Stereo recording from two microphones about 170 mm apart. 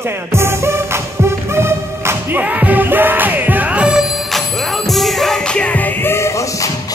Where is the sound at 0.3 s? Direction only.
15° right (ahead or behind); by 6.7 s 15° left (ahead or behind).